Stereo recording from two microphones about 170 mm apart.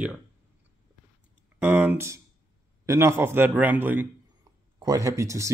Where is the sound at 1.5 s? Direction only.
10° right (ahead or behind).